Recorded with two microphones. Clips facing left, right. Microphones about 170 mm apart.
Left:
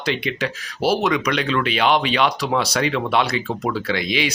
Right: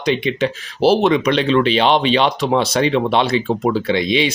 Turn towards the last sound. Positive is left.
turn(degrees=-25)  # may be behind; listen again after turning